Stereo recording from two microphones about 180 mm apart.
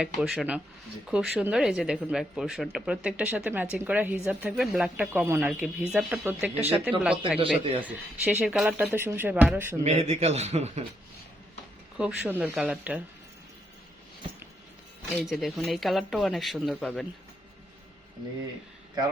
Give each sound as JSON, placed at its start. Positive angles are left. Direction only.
{"t": 0.0, "sound": "speech", "side_deg": -5}
{"t": 7.3, "sound": "speech", "side_deg": -30}
{"t": 7.8, "sound": "speech", "side_deg": -10}
{"t": 9.8, "sound": "a man's voice", "side_deg": -40}
{"t": 11.9, "sound": "speech", "side_deg": -10}
{"t": 15.2, "sound": "speech", "side_deg": 0}